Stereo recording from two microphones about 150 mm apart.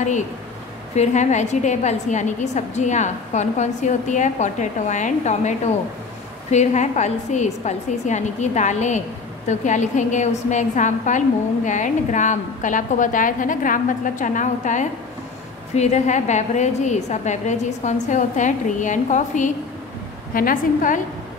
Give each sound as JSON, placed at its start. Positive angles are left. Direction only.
{"t": 0.9, "sound": "a woman's voice", "side_deg": 50}
{"t": 6.5, "sound": "a woman's voice", "side_deg": 50}